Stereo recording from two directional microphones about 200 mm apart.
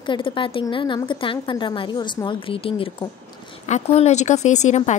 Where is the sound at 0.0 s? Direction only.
25° left (ahead or behind).